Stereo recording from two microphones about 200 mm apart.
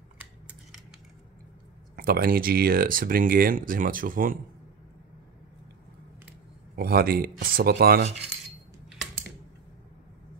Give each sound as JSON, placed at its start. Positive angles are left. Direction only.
{"t": 2.0, "sound": "speech", "side_deg": -45}
{"t": 6.7, "sound": "speech", "side_deg": -50}